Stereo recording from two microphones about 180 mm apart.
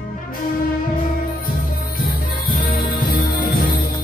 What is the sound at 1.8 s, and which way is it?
Music, 55° left (ahead or behind).